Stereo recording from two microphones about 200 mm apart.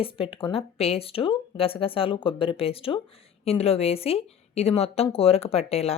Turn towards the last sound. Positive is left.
turn(degrees=30)  # may be behind; listen again after turning